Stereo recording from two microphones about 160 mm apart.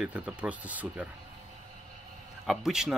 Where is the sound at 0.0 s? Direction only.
5° right (ahead or behind).